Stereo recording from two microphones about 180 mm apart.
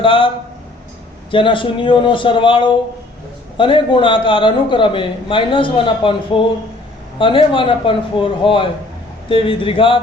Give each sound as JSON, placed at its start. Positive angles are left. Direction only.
{"t": 0.0, "sound": "a man's voice", "side_deg": 30}
{"t": 1.3, "sound": "a man's voice", "side_deg": 30}